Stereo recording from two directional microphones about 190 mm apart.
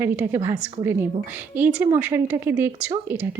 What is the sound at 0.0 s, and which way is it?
Speech, 10° right (ahead or behind).